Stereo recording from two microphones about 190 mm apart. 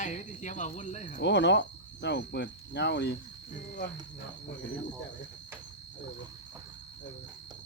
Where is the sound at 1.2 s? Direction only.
65° left (ahead or behind).